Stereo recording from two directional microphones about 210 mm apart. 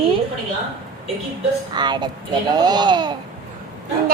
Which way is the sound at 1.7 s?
20° right (ahead or behind).